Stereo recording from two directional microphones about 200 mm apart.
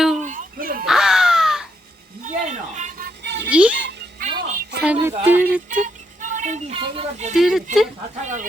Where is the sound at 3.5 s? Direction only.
5° right (ahead or behind).